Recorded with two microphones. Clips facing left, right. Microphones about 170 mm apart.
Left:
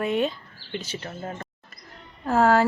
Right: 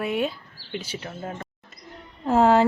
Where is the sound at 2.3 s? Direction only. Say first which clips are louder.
Right 2 dB; 20° right (ahead or behind).